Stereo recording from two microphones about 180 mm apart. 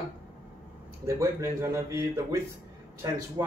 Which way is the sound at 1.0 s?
15° right (ahead or behind).